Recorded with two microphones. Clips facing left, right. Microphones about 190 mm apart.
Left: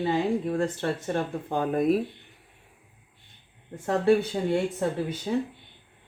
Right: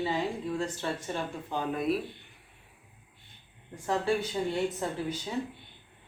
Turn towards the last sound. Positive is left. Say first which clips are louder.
# left 5 dB
turn(degrees=55)  # may be behind; listen again after turning